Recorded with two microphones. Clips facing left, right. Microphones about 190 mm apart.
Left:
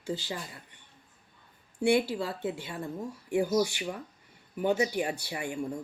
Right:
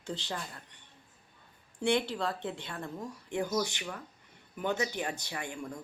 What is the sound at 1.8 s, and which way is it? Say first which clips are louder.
Speech: left 4 dB; 5° left (ahead or behind).